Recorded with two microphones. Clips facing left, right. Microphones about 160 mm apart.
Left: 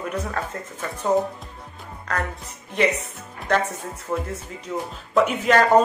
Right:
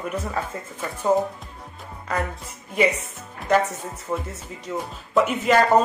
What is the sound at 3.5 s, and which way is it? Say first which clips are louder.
Speech: right 2 dB; centre (ahead or behind).